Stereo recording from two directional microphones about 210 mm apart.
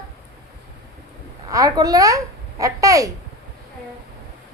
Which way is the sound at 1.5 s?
15° right (ahead or behind).